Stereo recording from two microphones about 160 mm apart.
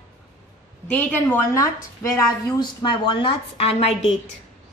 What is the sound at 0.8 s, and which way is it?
Speech, 10° left (ahead or behind).